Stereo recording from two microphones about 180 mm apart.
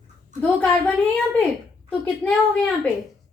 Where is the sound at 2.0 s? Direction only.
5° left (ahead or behind).